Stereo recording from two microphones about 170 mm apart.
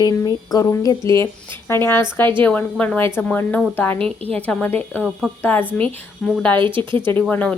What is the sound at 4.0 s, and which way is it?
Speech, 35° right (ahead or behind).